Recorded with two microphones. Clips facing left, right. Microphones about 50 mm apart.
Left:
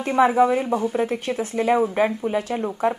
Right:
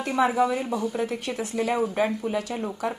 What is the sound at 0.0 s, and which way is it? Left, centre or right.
A woman's voice, left.